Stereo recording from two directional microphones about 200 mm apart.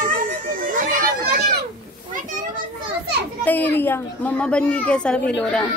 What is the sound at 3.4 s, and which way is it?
A woman's voice, 10° left (ahead or behind).